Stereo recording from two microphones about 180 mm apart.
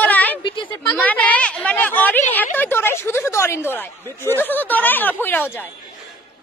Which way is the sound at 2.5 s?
10° left (ahead or behind).